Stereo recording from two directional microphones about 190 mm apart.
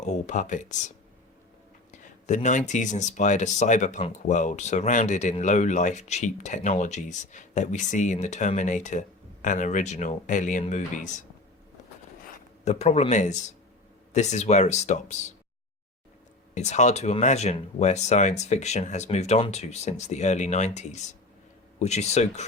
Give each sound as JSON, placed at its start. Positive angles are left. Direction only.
{"t": 0.0, "sound": "speech", "side_deg": 35}
{"t": 12.6, "sound": "speech", "side_deg": 35}
{"t": 16.6, "sound": "speech", "side_deg": 35}